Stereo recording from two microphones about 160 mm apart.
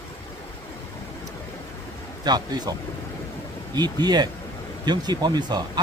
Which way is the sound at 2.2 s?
25° right (ahead or behind).